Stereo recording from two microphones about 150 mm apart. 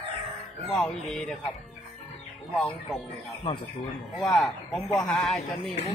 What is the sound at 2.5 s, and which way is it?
Speech, centre (ahead or behind).